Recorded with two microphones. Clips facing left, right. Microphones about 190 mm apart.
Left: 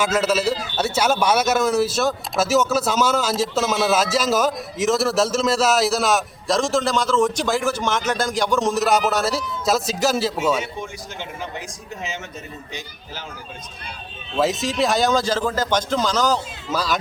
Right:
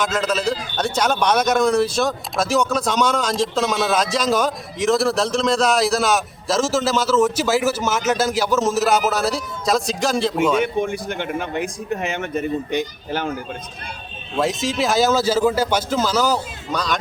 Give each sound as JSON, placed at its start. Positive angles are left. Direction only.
{"t": 0.0, "sound": "a man's voice", "side_deg": 5}
{"t": 10.6, "sound": "speech", "side_deg": -60}
{"t": 14.3, "sound": "a man's voice", "side_deg": 0}
{"t": 16.7, "sound": "a man's voice", "side_deg": 5}